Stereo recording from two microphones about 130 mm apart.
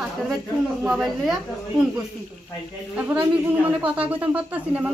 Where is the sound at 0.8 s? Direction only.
5° right (ahead or behind).